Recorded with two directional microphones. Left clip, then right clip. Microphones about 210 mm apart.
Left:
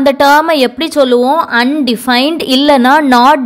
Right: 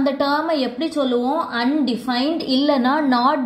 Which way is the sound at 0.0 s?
40° left (ahead or behind).